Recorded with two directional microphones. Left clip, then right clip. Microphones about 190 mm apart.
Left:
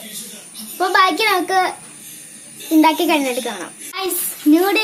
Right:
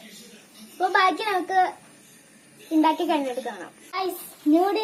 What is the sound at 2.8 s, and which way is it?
Speech, 30° left (ahead or behind).